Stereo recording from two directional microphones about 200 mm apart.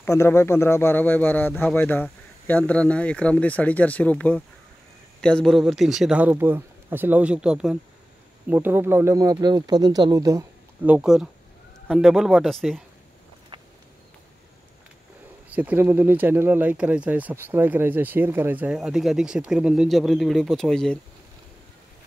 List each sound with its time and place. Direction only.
0.0 s speech: 15° left (ahead or behind)
13.5 s a sound: 25° right (ahead or behind)
15.5 s speech: 10° right (ahead or behind)